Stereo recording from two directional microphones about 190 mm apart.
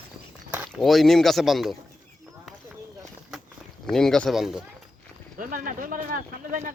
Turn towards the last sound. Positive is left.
turn(degrees=-45)  # may be behind; listen again after turning